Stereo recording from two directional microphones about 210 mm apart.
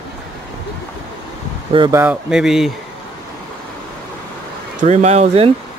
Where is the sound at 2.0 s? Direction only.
5° right (ahead or behind).